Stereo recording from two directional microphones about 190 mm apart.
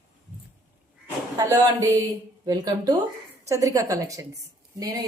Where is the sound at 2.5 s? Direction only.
20° right (ahead or behind).